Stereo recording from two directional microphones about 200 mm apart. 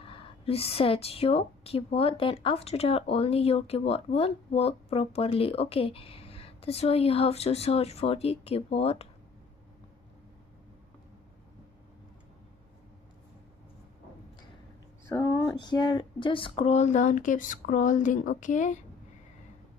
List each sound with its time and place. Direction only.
0.1 s speech: 30° left (ahead or behind)
15.0 s speech: 15° left (ahead or behind); by 18.8 s 40° left (ahead or behind)